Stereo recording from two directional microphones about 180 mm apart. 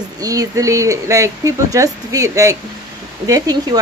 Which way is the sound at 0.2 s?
20° right (ahead or behind).